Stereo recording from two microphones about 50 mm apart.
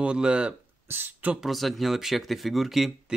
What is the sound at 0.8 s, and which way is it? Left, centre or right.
Speech, right.